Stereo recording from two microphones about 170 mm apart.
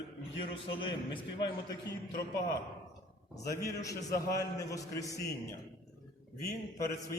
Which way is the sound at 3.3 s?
20° left (ahead or behind).